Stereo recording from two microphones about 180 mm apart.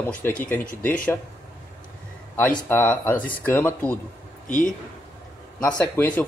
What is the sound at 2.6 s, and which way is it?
Speech, 10° left (ahead or behind).